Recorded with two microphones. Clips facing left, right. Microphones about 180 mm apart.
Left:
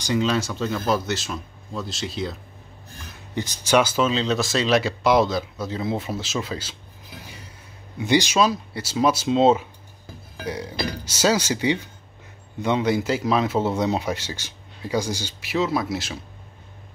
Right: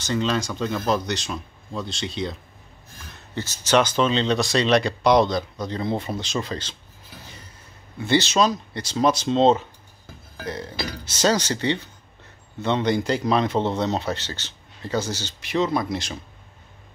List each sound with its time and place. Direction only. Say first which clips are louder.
0.0 s speech: left 2 dB; 10° left (ahead or behind)
3.3 s speech: even; 15° left (ahead or behind)
8.0 s speech: even; 15° left (ahead or behind)
10.3 s music: left 1 dB; 10° left (ahead or behind)
10.9 s speech: even; 10° left (ahead or behind)